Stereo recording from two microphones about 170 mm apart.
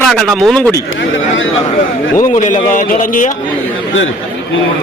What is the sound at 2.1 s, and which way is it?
Speech, 50° left (ahead or behind).